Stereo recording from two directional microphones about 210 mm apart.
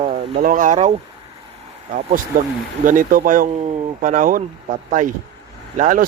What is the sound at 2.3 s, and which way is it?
Speech, 40° right (ahead or behind).